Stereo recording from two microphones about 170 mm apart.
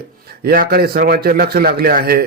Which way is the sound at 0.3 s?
60° right (ahead or behind).